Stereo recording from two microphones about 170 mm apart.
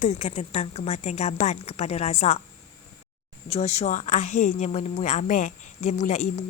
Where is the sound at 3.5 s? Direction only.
40° left (ahead or behind).